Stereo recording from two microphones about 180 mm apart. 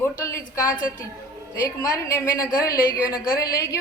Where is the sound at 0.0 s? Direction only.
15° left (ahead or behind).